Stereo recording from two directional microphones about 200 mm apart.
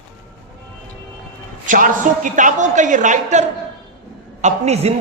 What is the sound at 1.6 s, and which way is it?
A man's voice, 40° right (ahead or behind).